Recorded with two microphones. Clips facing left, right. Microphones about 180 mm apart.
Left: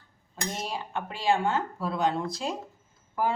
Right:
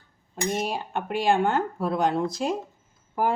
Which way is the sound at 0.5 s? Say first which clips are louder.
Right 5 dB; 55° right (ahead or behind).